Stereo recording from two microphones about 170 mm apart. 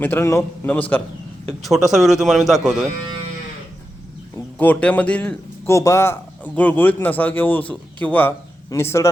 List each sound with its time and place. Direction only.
0.0 s a man's voice: 10° left (ahead or behind)
1.5 s speech: centre (ahead or behind)
4.4 s a man's voice: 10° left (ahead or behind)